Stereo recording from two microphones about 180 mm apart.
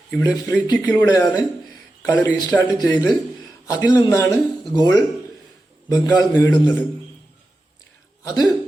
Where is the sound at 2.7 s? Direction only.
20° left (ahead or behind).